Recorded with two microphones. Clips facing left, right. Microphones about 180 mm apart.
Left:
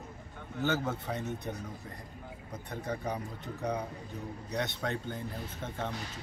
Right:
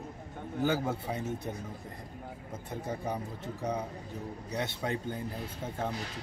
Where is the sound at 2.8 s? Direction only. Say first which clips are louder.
Even; 5° right (ahead or behind).